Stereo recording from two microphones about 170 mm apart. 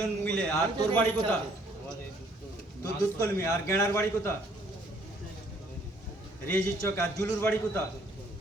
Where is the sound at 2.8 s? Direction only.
15° left (ahead or behind).